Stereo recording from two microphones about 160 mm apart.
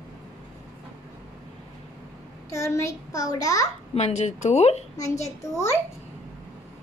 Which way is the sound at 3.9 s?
45° left (ahead or behind).